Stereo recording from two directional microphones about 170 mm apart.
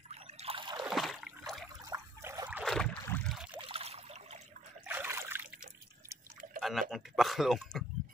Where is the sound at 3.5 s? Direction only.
35° right (ahead or behind).